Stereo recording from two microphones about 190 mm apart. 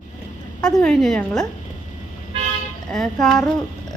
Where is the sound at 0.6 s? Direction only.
5° left (ahead or behind).